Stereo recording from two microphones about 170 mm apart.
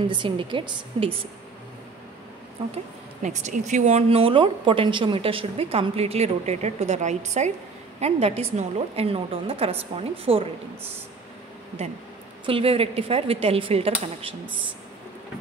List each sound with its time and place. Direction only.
0.1 s a woman's voice: 30° right (ahead or behind)
2.7 s speech: 45° right (ahead or behind)
12.4 s speech: 30° right (ahead or behind)